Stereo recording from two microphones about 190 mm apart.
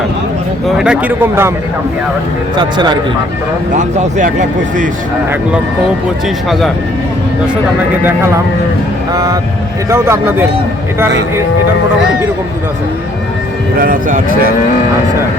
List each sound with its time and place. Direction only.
0.8 s a man's voice: 5° right (ahead or behind)
2.6 s a man's voice: 25° right (ahead or behind)
3.8 s speech: 40° right (ahead or behind)
6.2 s speech: centre (ahead or behind)
9.1 s a man's voice: 20° right (ahead or behind)
13.7 s speech: 45° right (ahead or behind)